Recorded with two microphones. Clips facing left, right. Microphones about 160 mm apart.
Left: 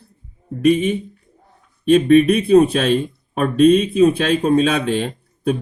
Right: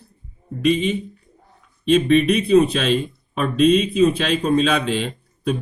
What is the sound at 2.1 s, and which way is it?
A man's voice, 50° left (ahead or behind).